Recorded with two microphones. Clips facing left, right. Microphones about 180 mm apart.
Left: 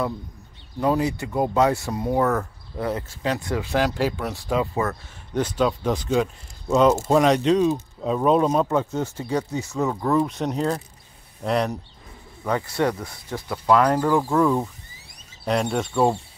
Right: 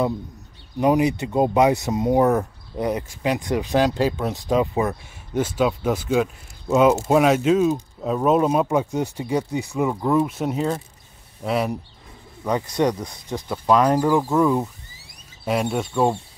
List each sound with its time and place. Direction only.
0.7 s speech: 15° right (ahead or behind)
12.4 s speech: 15° right (ahead or behind); by 16.2 s centre (ahead or behind)